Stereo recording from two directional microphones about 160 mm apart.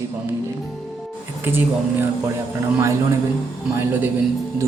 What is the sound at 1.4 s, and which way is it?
A man's voice, 15° right (ahead or behind).